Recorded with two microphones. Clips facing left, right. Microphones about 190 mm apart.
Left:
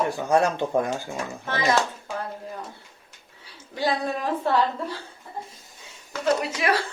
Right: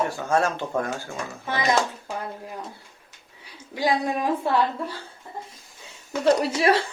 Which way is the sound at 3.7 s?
15° right (ahead or behind).